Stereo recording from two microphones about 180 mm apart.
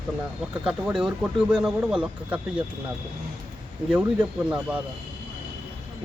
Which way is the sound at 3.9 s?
10° right (ahead or behind).